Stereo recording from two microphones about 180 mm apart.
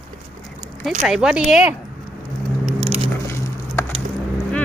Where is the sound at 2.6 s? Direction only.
35° right (ahead or behind).